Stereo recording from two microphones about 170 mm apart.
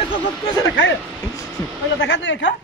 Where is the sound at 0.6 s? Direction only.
90° left.